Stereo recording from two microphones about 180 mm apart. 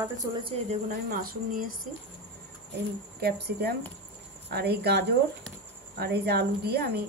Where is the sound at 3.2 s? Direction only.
65° right (ahead or behind).